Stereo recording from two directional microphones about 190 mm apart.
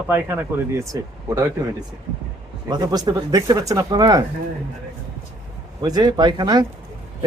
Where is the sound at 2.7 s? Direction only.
20° right (ahead or behind).